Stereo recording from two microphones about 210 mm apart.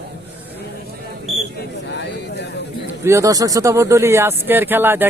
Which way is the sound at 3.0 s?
15° right (ahead or behind).